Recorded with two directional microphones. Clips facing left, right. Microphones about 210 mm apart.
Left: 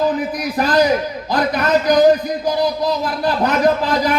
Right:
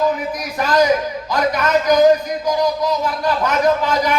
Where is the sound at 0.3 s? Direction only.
35° left (ahead or behind).